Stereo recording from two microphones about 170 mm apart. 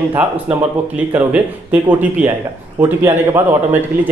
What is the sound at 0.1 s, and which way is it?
Speech, 10° right (ahead or behind).